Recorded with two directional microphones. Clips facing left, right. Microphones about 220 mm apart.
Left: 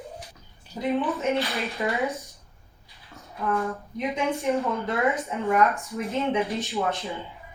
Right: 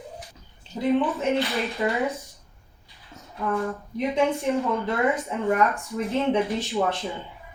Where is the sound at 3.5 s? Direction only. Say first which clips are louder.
Even; 30° right (ahead or behind).